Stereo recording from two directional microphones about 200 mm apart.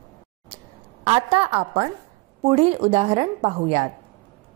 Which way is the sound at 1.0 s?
30° right (ahead or behind).